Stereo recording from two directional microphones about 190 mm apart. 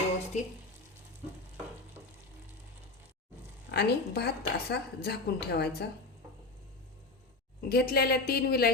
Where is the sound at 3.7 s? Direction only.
60° left (ahead or behind).